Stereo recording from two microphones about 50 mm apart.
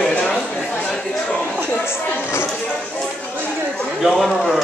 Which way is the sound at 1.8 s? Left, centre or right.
Left.